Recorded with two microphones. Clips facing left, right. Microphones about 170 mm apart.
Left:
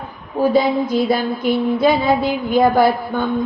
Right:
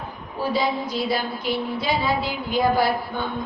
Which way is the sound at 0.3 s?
50° left (ahead or behind).